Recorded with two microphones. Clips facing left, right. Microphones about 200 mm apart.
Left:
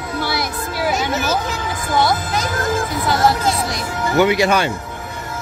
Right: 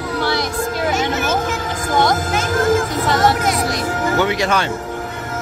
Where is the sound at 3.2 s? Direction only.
30° left (ahead or behind).